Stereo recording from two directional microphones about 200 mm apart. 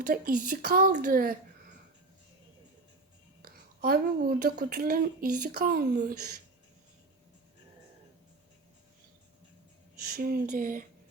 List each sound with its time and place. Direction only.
0.1 s a woman's voice: 50° right (ahead or behind)
3.4 s a woman's voice: 50° right (ahead or behind)
10.1 s a woman's voice: 50° right (ahead or behind)